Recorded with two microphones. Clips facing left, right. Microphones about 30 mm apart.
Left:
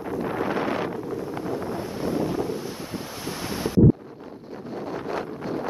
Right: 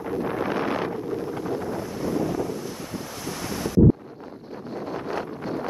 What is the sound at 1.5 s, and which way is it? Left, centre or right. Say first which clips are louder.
Wind noise: even; left.